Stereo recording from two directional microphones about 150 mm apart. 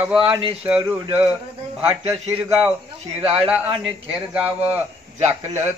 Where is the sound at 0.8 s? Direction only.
10° right (ahead or behind).